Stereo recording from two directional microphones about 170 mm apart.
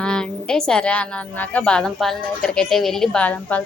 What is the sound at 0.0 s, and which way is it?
A woman's voice, 5° left (ahead or behind).